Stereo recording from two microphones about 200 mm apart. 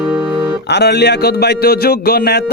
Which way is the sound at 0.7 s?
55° left (ahead or behind).